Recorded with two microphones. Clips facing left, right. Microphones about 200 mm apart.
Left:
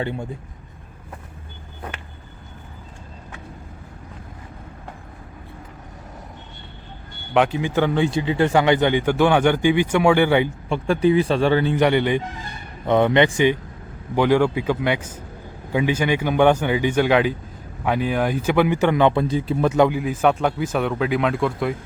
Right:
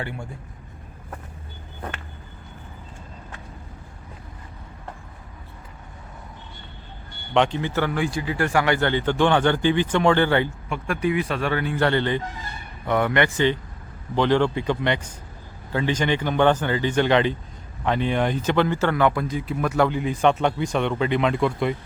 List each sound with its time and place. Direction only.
0.0 s speech: 20° left (ahead or behind)
7.3 s speech: 5° left (ahead or behind)
10.7 s speech: 30° left (ahead or behind)
11.8 s speech: 15° left (ahead or behind)
19.9 s speech: 5° left (ahead or behind)